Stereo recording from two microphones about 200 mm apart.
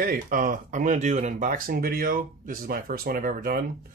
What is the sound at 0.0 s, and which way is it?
Speech, 45° right (ahead or behind).